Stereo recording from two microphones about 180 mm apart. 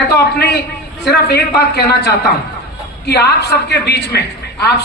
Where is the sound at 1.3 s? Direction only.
60° left (ahead or behind).